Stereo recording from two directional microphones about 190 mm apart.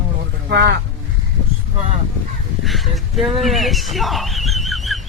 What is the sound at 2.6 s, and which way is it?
Speech, centre (ahead or behind).